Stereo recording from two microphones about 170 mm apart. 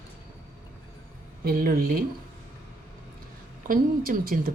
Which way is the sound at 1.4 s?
60° right (ahead or behind).